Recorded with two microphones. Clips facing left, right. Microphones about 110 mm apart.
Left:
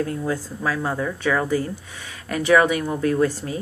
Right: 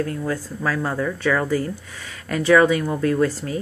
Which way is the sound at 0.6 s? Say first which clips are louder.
Right 3 dB; 10° left (ahead or behind).